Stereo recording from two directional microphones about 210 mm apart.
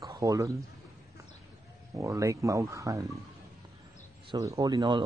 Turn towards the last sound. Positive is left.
turn(degrees=-20)  # may be behind; listen again after turning